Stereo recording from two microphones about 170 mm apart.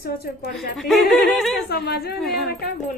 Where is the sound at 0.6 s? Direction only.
Centre (ahead or behind).